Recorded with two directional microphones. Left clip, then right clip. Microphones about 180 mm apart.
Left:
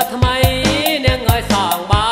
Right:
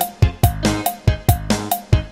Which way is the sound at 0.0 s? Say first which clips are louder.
Left 7 dB; 10° left (ahead or behind).